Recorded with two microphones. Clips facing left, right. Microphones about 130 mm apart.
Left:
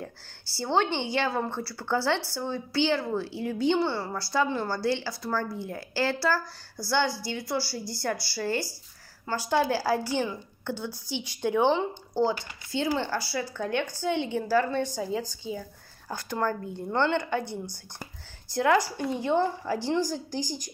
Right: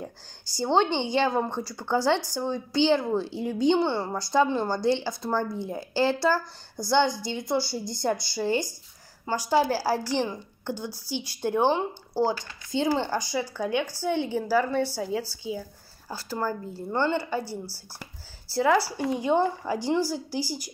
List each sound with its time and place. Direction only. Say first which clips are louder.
0.6 s a woman's voice: right 3 dB; 20° right (ahead or behind)